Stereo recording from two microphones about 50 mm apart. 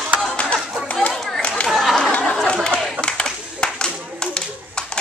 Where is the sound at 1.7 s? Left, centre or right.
Centre.